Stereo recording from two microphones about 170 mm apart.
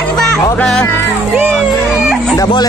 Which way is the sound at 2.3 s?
25° left (ahead or behind).